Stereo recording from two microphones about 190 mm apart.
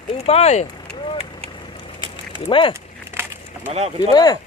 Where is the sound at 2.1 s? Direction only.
25° left (ahead or behind).